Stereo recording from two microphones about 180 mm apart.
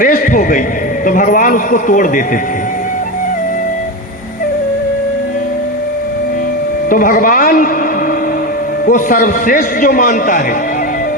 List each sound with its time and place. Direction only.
0.0 s a man's voice: 50° left (ahead or behind)
6.9 s a man's voice: 50° left (ahead or behind)
8.9 s a man's voice: 50° left (ahead or behind)